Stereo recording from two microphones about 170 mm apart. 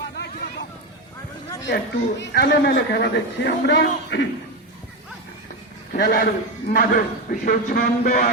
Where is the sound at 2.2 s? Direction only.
65° left (ahead or behind); by 4.2 s 85° left.